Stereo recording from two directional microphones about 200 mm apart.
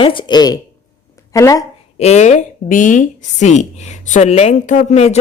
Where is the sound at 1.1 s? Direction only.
15° left (ahead or behind).